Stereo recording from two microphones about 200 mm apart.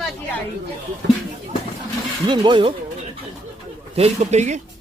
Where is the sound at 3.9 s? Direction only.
30° right (ahead or behind).